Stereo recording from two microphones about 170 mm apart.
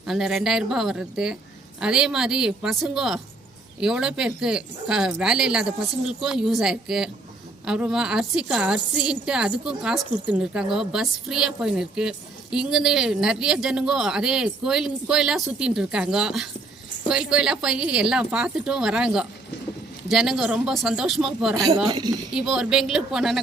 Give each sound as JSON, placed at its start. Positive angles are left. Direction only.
{"t": 0.0, "sound": "a woman's voice", "side_deg": 0}
{"t": 21.5, "sound": "speech", "side_deg": -25}
{"t": 22.4, "sound": "a woman's voice", "side_deg": -5}